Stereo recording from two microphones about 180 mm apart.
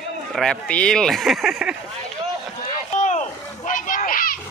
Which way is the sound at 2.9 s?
40° left (ahead or behind).